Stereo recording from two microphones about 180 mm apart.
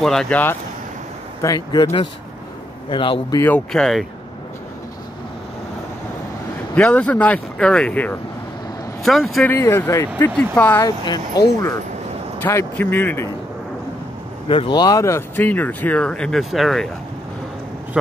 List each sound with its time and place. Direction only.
0.0 s speech: 5° left (ahead or behind)
1.4 s speech: 20° left (ahead or behind)
3.3 s speech: 10° left (ahead or behind)
6.7 s speech: 5° left (ahead or behind)
10.8 s speech: 25° left (ahead or behind)
14.5 s speech: 25° left (ahead or behind); by 16.9 s centre (ahead or behind)